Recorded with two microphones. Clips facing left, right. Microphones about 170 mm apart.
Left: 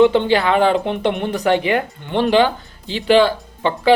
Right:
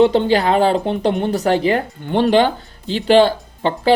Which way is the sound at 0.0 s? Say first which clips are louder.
Even; 40° right (ahead or behind).